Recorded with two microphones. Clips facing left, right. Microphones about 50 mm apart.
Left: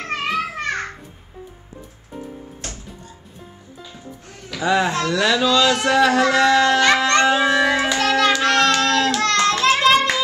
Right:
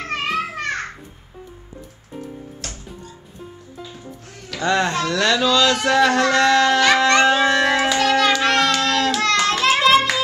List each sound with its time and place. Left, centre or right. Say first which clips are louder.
0.4 s children playing: left 1 dB; centre
4.3 s speech: left 1 dB; centre
8.4 s child singing: left 1 dB; centre
9.2 s child singing: left 1 dB; centre